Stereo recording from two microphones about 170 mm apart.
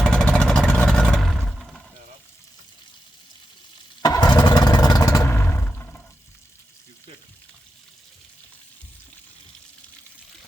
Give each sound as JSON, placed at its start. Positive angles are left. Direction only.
{"t": 0.0, "sound": "vehicle", "side_deg": 5}
{"t": 4.0, "sound": "vehicle", "side_deg": 20}
{"t": 5.2, "sound": "roar", "side_deg": 15}